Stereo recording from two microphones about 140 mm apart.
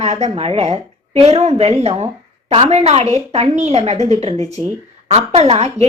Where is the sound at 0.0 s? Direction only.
50° right (ahead or behind).